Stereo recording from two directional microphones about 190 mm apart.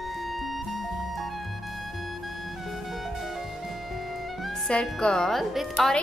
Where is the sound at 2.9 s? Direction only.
Centre (ahead or behind).